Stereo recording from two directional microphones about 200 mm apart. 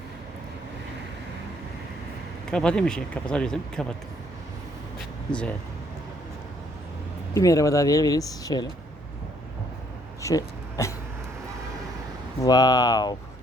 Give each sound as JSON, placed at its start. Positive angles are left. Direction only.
{"t": 2.5, "sound": "speech", "side_deg": 5}
{"t": 5.3, "sound": "speech", "side_deg": 5}
{"t": 7.3, "sound": "speech", "side_deg": 15}
{"t": 10.2, "sound": "a sound", "side_deg": 15}
{"t": 12.4, "sound": "speech", "side_deg": 20}